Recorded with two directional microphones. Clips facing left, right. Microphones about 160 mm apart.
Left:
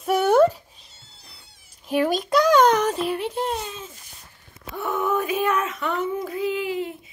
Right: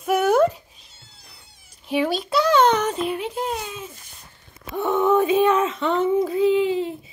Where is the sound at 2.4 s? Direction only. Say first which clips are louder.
Even; 10° left (ahead or behind); by 3.9 s 10° right (ahead or behind).